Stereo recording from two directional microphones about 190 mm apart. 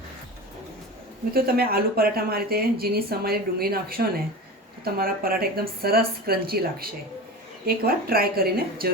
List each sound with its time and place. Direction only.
1.3 s speech: 55° right (ahead or behind)